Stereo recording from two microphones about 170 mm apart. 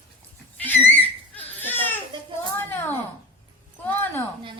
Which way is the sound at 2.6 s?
10° left (ahead or behind).